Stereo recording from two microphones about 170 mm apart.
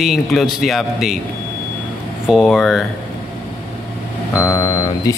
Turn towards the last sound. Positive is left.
turn(degrees=20)  # may be behind; listen again after turning